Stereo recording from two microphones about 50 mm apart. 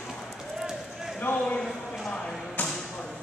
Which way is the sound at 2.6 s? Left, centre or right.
Left.